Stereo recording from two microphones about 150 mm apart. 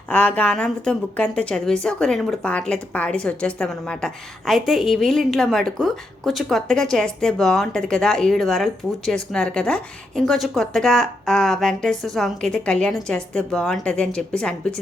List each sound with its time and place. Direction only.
0.1 s a woman's voice: 5° left (ahead or behind)